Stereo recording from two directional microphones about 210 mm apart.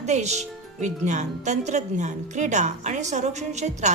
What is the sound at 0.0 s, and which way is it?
Speech, 35° right (ahead or behind).